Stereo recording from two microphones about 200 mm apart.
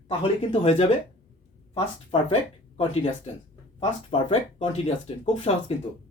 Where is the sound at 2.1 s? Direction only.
25° left (ahead or behind).